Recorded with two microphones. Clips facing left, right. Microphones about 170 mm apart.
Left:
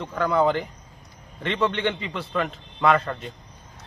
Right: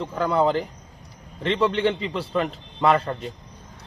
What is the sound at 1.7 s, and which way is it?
Speech, 35° right (ahead or behind).